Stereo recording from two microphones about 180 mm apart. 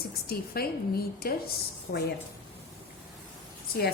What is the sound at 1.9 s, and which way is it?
Speech, 55° left (ahead or behind).